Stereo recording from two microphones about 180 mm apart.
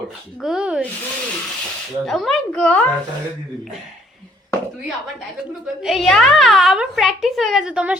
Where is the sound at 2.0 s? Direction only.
Centre (ahead or behind).